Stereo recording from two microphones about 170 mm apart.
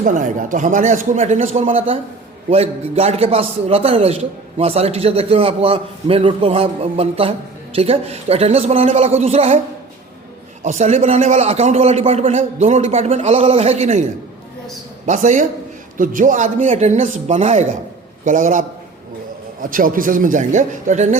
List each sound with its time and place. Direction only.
0.0 s a man's voice: 50° right (ahead or behind)
10.6 s a man's voice: 40° right (ahead or behind)
15.0 s speech: 45° right (ahead or behind)
19.7 s speech: 55° right (ahead or behind)